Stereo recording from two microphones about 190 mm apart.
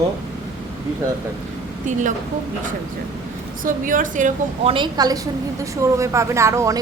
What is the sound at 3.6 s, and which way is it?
A woman's voice, 45° right (ahead or behind).